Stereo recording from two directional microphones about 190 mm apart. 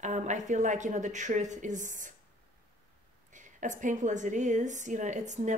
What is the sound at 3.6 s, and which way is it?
Speech, 40° right (ahead or behind).